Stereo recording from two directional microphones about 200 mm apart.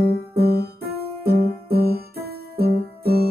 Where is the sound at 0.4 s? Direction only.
50° right (ahead or behind).